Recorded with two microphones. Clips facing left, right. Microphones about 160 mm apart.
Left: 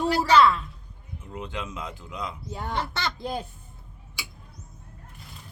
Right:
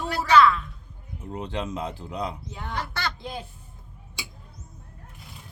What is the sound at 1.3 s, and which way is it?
Speech, 35° right (ahead or behind).